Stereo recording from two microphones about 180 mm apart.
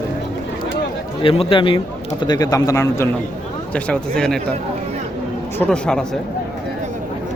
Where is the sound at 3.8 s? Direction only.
5° left (ahead or behind).